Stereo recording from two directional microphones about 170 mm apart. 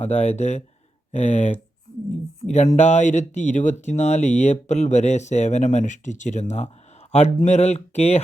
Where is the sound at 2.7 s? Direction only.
40° left (ahead or behind).